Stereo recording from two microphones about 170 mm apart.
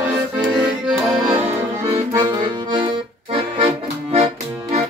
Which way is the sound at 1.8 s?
20° right (ahead or behind).